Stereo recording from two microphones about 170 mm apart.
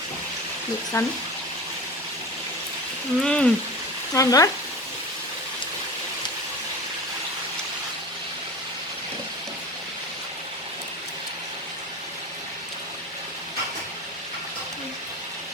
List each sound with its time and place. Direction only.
0.9 s frying: 20° left (ahead or behind)
3.2 s speech: 5° left (ahead or behind)
4.1 s frying: 20° left (ahead or behind)